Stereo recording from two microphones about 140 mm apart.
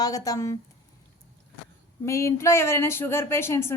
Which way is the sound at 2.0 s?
20° left (ahead or behind).